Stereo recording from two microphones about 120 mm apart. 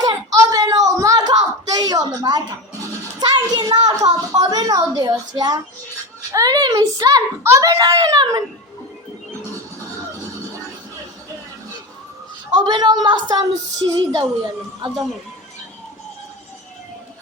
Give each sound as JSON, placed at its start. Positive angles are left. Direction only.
{"t": 0.0, "sound": "a sound", "side_deg": -30}
{"t": 3.2, "sound": "a woman's voice", "side_deg": -35}
{"t": 12.5, "sound": "a woman's voice", "side_deg": -35}